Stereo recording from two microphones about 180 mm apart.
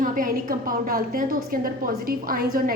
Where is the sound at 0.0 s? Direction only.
50° right (ahead or behind).